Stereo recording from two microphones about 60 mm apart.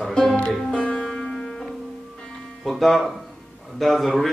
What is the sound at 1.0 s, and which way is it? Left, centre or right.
Music, centre.